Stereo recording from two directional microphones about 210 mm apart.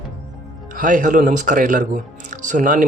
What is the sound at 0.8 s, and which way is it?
Speech, 40° right (ahead or behind).